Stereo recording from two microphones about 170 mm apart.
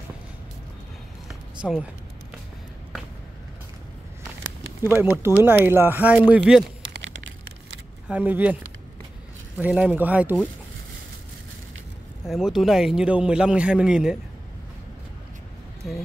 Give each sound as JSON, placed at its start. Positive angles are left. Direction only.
{"t": 1.6, "sound": "a man's voice", "side_deg": -5}
{"t": 4.8, "sound": "speech", "side_deg": -15}
{"t": 6.9, "sound": "a sound", "side_deg": -90}
{"t": 8.1, "sound": "speech", "side_deg": -10}
{"t": 9.6, "sound": "speech", "side_deg": -5}
{"t": 12.3, "sound": "a man's voice", "side_deg": 0}